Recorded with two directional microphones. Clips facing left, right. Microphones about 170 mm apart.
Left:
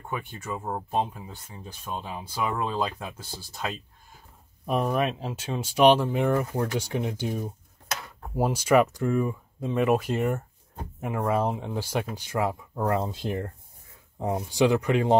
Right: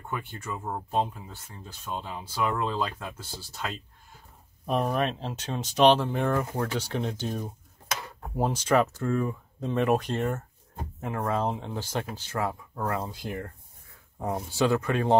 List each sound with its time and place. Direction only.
0.1 s speech: 15° left (ahead or behind)
4.6 s speech: 5° left (ahead or behind); by 13.5 s 25° left (ahead or behind)
14.2 s speech: 15° left (ahead or behind)